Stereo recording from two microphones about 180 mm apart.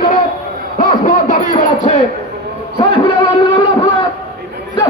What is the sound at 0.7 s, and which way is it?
Speech, 45° left (ahead or behind).